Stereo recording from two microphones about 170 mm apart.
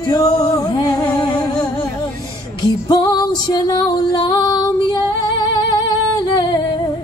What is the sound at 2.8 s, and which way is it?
Music, 25° left (ahead or behind).